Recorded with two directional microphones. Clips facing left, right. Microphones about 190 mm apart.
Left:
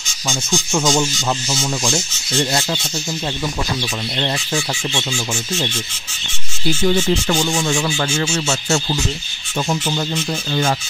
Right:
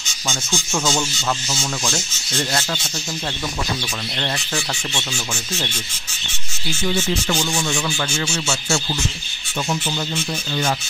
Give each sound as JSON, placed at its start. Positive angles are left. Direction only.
{"t": 0.3, "sound": "rub", "side_deg": 15}
{"t": 4.9, "sound": "rub", "side_deg": 15}
{"t": 6.8, "sound": "speech", "side_deg": 50}